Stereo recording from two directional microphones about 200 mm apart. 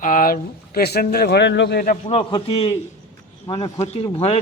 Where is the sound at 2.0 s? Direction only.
25° left (ahead or behind).